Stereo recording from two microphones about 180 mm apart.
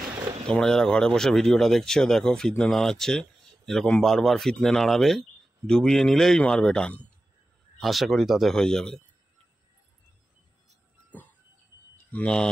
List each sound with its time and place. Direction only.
0.5 s speech: 5° left (ahead or behind)
12.1 s a man's voice: 5° left (ahead or behind)